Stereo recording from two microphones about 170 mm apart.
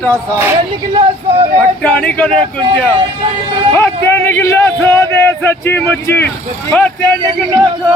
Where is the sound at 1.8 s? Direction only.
10° left (ahead or behind).